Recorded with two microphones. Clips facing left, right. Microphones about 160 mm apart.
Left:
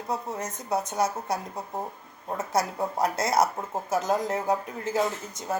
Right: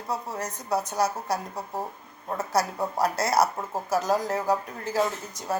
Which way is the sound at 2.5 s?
25° left (ahead or behind).